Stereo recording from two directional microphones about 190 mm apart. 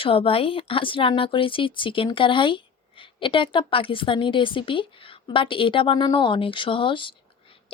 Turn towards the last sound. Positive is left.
turn(degrees=25)  # may be behind; listen again after turning